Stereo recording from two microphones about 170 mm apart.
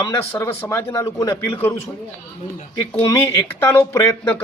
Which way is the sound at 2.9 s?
15° left (ahead or behind).